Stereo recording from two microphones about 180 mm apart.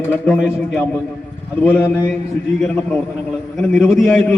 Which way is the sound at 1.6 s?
10° left (ahead or behind).